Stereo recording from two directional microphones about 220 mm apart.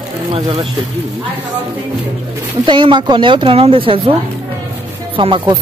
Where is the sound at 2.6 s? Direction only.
20° right (ahead or behind).